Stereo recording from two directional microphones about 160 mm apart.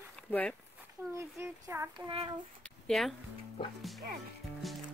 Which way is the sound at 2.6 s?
5° left (ahead or behind).